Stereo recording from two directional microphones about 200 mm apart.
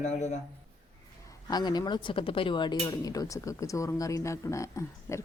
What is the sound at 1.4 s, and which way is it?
Speech, 20° left (ahead or behind).